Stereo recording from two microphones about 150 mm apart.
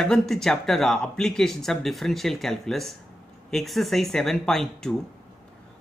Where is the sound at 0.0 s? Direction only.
5° left (ahead or behind).